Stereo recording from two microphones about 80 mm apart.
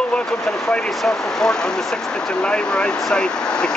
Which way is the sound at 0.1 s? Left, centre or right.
Centre.